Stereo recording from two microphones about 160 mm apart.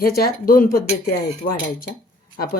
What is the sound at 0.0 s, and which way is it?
A woman's voice, 70° left (ahead or behind).